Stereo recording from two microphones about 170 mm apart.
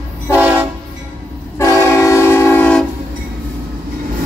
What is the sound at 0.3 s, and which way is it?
Train, 10° right (ahead or behind).